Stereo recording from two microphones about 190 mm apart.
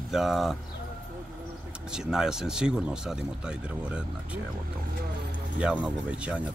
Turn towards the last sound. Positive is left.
turn(degrees=-5)  # may be behind; listen again after turning